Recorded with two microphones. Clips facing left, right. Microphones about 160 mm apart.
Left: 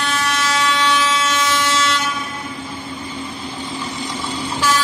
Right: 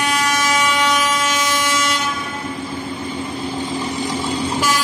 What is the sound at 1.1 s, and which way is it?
Train, 45° right (ahead or behind).